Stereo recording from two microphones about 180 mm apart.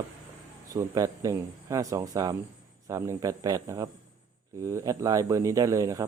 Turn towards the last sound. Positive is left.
turn(degrees=-20)  # may be behind; listen again after turning